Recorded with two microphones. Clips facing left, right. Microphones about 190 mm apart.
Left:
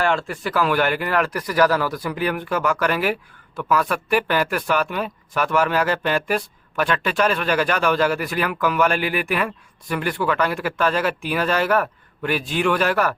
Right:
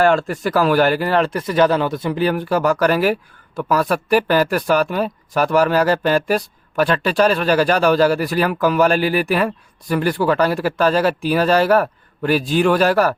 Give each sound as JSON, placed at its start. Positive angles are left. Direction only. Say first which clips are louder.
{"t": 0.0, "sound": "speech", "louder": "right 6 dB", "side_deg": -40}